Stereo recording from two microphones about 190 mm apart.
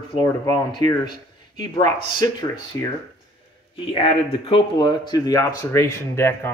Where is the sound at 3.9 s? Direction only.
30° left (ahead or behind).